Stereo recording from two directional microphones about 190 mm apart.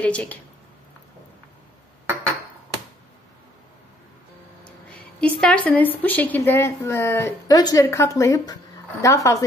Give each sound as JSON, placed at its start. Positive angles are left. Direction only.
{"t": 0.0, "sound": "speech", "side_deg": 5}
{"t": 4.6, "sound": "speech", "side_deg": 5}